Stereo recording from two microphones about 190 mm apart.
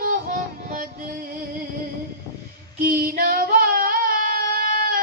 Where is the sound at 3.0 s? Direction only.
50° right (ahead or behind).